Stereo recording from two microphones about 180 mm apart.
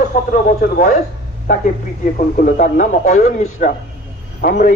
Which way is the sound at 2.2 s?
45° left (ahead or behind).